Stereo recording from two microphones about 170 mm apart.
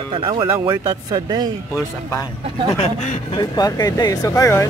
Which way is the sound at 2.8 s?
40° left (ahead or behind).